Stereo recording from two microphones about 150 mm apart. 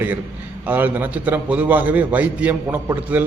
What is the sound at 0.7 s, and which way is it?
A man's voice, 10° right (ahead or behind).